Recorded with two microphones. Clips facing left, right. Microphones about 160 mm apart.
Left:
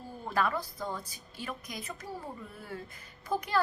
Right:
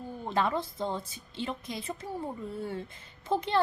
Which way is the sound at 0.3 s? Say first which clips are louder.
Right 2 dB; 25° right (ahead or behind).